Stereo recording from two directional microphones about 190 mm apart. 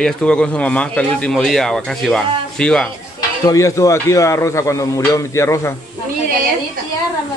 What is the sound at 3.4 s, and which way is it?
Speech, 15° left (ahead or behind).